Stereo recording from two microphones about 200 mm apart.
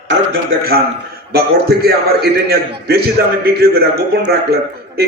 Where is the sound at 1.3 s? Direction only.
50° right (ahead or behind).